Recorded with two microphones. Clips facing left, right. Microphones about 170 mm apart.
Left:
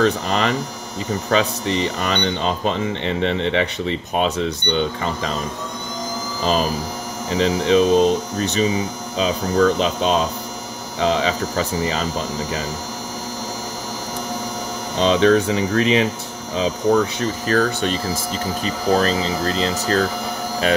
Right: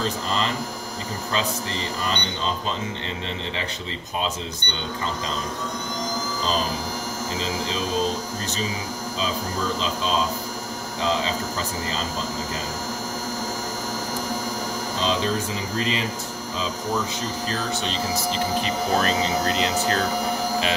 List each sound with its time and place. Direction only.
0.0 s speech: 70° left (ahead or behind)
7.3 s speech: 65° left (ahead or behind)
15.0 s speech: 70° left (ahead or behind)
18.6 s speech: 35° left (ahead or behind)